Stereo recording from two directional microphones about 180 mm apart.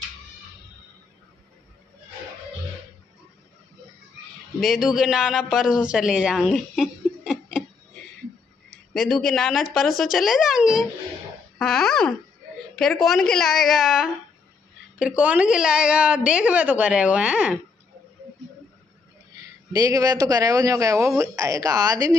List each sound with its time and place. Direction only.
4.6 s a man's voice: centre (ahead or behind)
8.9 s a woman's voice: centre (ahead or behind)
19.7 s a man's voice: 20° right (ahead or behind)